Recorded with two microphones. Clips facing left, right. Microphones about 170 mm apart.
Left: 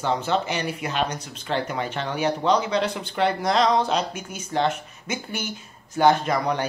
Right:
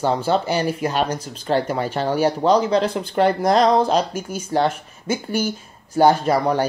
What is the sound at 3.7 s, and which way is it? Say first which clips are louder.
Speech: right 5 dB; 30° right (ahead or behind).